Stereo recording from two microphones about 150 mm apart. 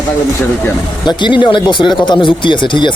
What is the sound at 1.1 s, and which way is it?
Speech, 30° left (ahead or behind).